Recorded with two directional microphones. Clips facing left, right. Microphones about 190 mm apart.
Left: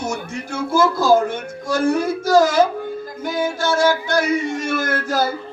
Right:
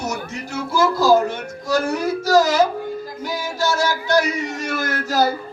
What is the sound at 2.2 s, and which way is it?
Music, 50° left (ahead or behind).